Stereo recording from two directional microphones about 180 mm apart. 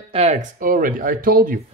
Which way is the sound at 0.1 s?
35° right (ahead or behind).